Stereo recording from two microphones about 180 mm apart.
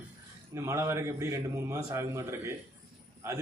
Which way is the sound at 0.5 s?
15° right (ahead or behind).